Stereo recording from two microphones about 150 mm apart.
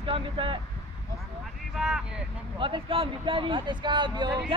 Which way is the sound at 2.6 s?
35° right (ahead or behind).